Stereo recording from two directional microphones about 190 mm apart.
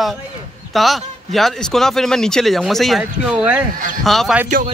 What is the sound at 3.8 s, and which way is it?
Speech, 45° right (ahead or behind).